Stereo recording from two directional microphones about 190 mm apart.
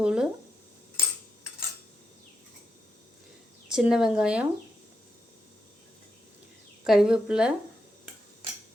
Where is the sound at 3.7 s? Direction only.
5° right (ahead or behind).